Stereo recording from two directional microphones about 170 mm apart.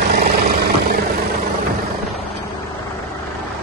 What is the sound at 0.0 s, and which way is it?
Vehicle, 60° right (ahead or behind).